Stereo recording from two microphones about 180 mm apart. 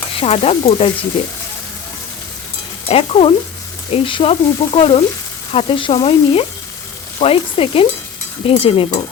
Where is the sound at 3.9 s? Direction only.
30° left (ahead or behind).